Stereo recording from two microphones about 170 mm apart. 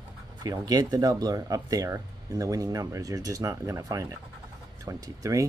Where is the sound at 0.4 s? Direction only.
20° right (ahead or behind).